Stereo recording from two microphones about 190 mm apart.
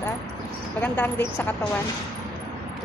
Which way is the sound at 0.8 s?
10° left (ahead or behind).